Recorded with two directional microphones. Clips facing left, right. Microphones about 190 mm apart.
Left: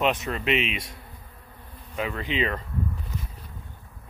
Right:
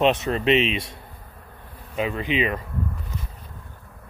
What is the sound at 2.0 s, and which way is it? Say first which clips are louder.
Speech: right 4 dB; 20° right (ahead or behind).